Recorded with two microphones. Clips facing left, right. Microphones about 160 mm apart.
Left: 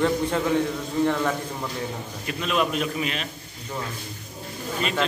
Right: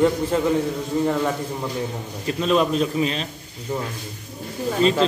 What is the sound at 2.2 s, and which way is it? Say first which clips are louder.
A man's voice: right 5 dB; 30° right (ahead or behind).